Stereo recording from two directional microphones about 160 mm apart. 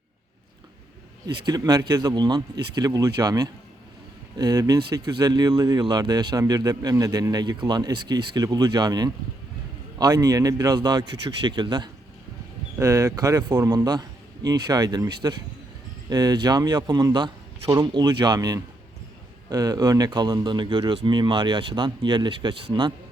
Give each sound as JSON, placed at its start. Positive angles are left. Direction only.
{"t": 1.3, "sound": "speech", "side_deg": -25}